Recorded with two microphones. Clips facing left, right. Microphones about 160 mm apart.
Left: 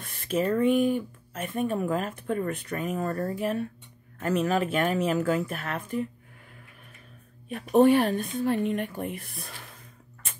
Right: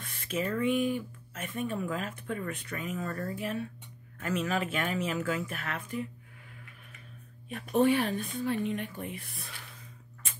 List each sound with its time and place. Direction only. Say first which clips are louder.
0.0 s speech: left 6 dB; 40° left (ahead or behind)
7.4 s speech: left 6 dB; 45° left (ahead or behind)